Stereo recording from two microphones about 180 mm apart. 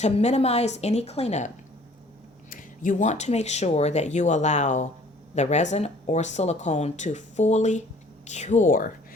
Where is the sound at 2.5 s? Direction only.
45° left (ahead or behind).